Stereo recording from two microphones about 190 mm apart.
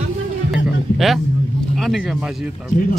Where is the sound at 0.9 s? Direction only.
Centre (ahead or behind).